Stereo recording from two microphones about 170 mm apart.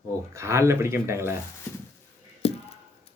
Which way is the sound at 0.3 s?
15° right (ahead or behind).